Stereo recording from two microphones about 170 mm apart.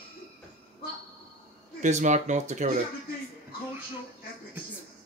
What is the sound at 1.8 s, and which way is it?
Speech, 45° right (ahead or behind).